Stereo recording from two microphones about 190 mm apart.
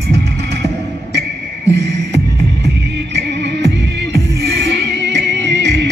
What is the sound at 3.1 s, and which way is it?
Music, 65° right (ahead or behind).